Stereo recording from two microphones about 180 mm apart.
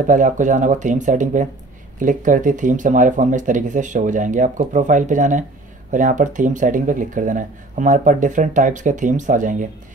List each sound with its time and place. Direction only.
0.0 s speech: 45° right (ahead or behind)